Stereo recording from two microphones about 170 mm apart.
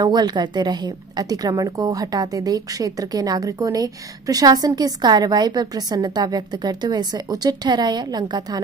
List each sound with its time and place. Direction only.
0.0 s a woman's voice: 25° right (ahead or behind)